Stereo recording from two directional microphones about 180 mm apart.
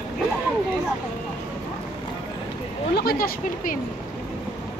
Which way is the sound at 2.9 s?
60° left (ahead or behind).